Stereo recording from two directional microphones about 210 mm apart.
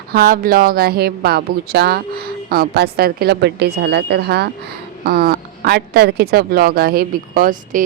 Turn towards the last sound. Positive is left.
turn(degrees=-40)  # may be behind; listen again after turning